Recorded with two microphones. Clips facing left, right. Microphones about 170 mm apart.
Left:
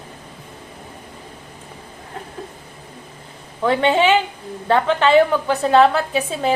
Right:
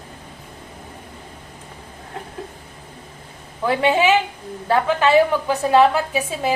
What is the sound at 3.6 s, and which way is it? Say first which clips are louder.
A woman's voice: left 1 dB; 10° right (ahead or behind).